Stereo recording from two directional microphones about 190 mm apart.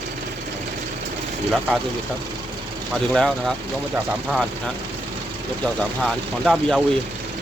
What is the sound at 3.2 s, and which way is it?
Speech, centre (ahead or behind).